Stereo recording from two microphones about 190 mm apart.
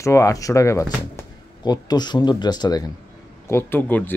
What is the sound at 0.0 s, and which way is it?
Speech, 15° left (ahead or behind).